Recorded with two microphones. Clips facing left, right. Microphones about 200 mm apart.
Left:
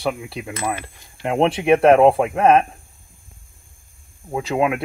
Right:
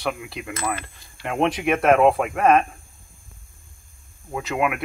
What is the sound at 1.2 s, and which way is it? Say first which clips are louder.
Speech: left 5 dB; 30° left (ahead or behind).